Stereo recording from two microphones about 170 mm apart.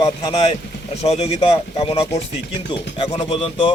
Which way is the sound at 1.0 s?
40° left (ahead or behind).